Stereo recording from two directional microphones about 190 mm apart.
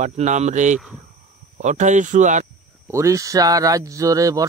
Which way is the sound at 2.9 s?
15° right (ahead or behind).